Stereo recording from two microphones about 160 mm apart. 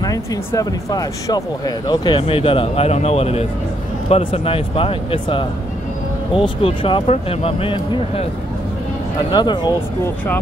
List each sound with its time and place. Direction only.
0.0 s speech: 20° left (ahead or behind)
9.3 s speech: 25° left (ahead or behind)